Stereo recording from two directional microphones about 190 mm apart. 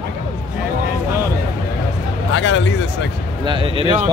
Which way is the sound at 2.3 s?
75° left (ahead or behind).